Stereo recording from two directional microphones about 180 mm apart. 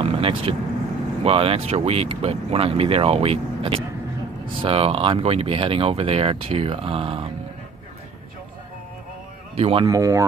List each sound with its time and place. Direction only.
0.0 s vehicle: 30° right (ahead or behind)
1.2 s speech: 35° right (ahead or behind)
9.6 s speech: 30° right (ahead or behind)
9.8 s speech: 20° right (ahead or behind)